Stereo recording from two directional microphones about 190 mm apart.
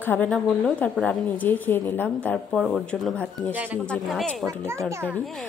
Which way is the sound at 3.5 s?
10° right (ahead or behind).